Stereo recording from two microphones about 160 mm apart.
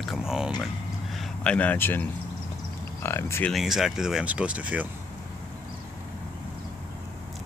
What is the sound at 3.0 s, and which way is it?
Speech, 15° left (ahead or behind).